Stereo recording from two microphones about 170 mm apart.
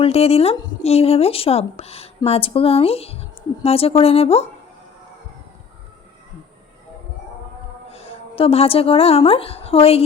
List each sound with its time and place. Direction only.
0.0 s speech: 35° left (ahead or behind)
7.9 s a woman's voice: 35° left (ahead or behind)